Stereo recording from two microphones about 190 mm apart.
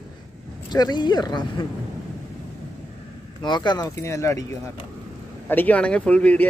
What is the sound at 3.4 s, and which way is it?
Speech, 25° left (ahead or behind).